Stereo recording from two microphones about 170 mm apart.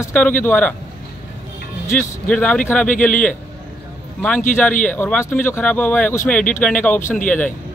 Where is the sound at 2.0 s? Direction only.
5° left (ahead or behind).